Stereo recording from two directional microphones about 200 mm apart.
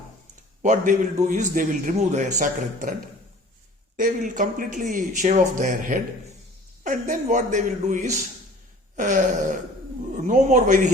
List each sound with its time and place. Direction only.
0.6 s speech: 35° right (ahead or behind)
3.9 s speech: 40° right (ahead or behind)